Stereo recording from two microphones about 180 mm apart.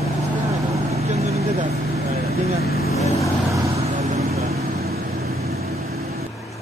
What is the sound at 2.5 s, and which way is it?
Vehicle, 60° left (ahead or behind).